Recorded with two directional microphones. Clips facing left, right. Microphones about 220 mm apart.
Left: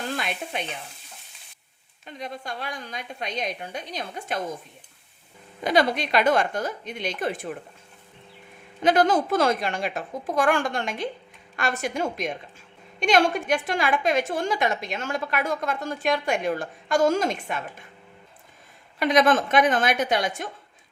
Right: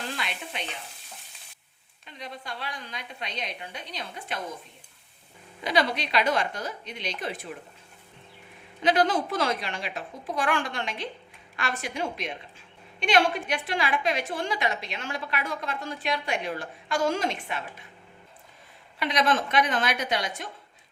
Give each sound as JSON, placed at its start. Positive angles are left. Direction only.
{"t": 0.2, "sound": "stir", "side_deg": 50}
{"t": 2.0, "sound": "a woman's voice", "side_deg": 45}
{"t": 5.6, "sound": "a woman's voice", "side_deg": 50}
{"t": 8.8, "sound": "a woman's voice", "side_deg": 45}
{"t": 18.9, "sound": "a woman's voice", "side_deg": 45}